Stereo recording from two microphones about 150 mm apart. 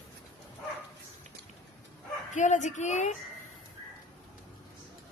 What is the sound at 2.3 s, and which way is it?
Speech, 55° left (ahead or behind).